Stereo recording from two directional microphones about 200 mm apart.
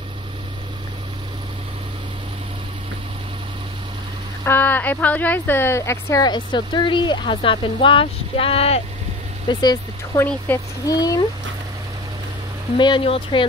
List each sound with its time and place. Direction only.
4.5 s a woman's voice: 10° left (ahead or behind); by 8.8 s 30° left (ahead or behind)
9.5 s a woman's voice: 20° left (ahead or behind)
12.7 s a woman's voice: 25° left (ahead or behind)